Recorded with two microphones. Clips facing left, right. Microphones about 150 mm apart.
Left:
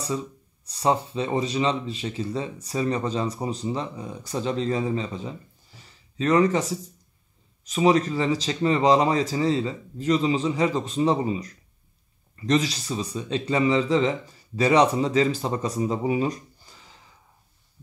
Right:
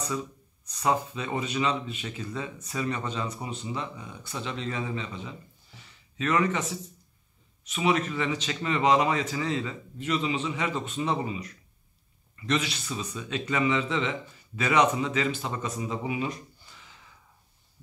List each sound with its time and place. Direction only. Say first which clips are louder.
0.0 s speech: left 3 dB; 30° left (ahead or behind)